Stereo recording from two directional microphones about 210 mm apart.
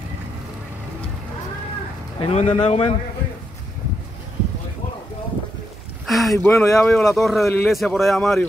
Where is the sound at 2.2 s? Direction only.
25° left (ahead or behind).